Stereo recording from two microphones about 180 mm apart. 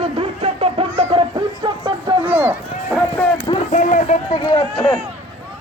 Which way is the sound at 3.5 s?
35° left (ahead or behind).